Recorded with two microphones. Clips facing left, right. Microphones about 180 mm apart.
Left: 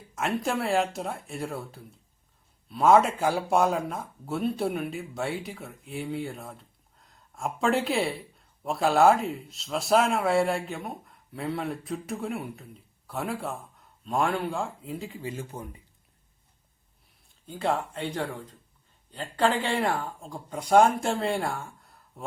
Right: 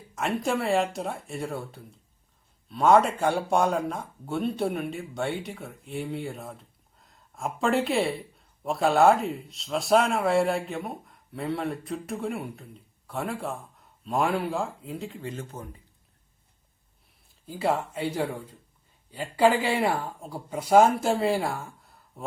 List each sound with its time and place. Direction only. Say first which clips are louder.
0.2 s speech: right 1 dB; centre (ahead or behind)
17.2 s speech: right 2 dB; 5° right (ahead or behind)